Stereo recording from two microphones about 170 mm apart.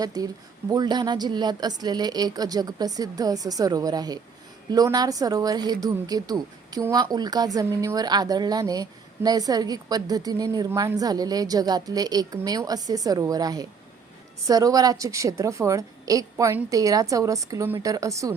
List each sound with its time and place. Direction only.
0.0 s a woman's voice: 20° right (ahead or behind)